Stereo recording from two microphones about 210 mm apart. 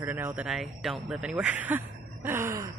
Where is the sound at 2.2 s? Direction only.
10° right (ahead or behind).